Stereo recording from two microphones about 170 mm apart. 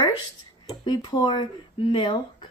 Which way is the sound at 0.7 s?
25° left (ahead or behind).